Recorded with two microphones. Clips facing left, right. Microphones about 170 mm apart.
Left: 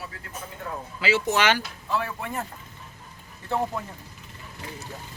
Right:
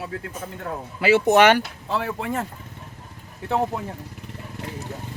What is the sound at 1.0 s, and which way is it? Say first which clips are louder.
Speech: right 8 dB; 55° right (ahead or behind).